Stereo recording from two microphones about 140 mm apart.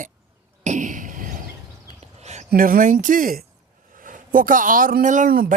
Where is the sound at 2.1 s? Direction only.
55° right (ahead or behind).